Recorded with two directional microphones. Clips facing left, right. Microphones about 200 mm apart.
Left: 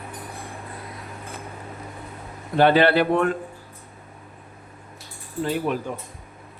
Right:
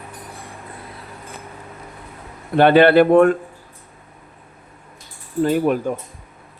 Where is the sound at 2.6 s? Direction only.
60° right (ahead or behind).